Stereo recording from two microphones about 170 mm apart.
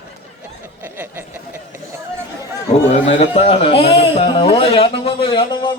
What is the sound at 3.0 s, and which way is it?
A man's voice, 35° left (ahead or behind).